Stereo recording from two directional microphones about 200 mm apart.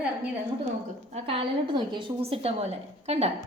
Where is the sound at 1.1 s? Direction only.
30° right (ahead or behind).